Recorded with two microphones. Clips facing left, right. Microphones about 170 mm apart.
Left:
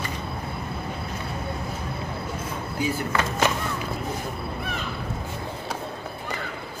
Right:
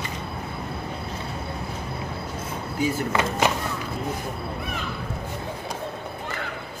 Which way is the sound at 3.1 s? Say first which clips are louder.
Right 1 dB; 15° right (ahead or behind).